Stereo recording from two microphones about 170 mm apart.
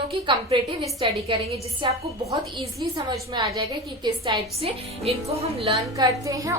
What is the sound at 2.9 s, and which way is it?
A woman's voice, 20° right (ahead or behind).